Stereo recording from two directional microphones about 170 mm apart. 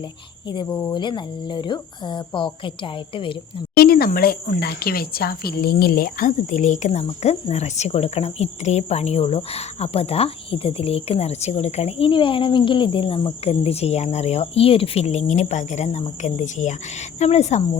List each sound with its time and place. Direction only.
0.5 s speech: 25° left (ahead or behind)
3.8 s speech: 65° left (ahead or behind); by 17.6 s 40° left (ahead or behind)